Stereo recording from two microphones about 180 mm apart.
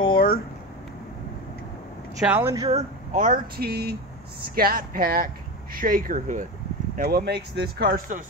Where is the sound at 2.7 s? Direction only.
45° right (ahead or behind).